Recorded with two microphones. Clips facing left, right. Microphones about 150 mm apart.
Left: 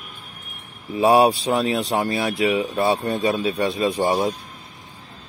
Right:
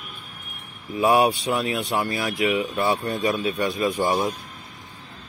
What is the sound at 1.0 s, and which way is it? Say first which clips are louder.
Speech: left 3 dB; 35° left (ahead or behind).